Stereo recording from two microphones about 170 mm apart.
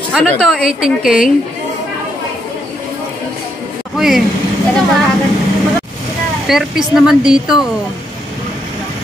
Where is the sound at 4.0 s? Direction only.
Centre (ahead or behind).